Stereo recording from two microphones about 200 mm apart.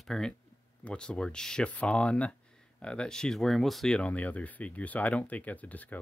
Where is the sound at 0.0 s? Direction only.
Centre (ahead or behind).